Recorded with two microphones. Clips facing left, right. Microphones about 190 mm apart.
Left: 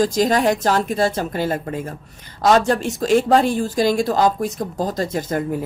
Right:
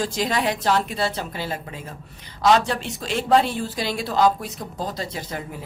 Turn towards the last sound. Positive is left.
turn(degrees=45)  # may be behind; listen again after turning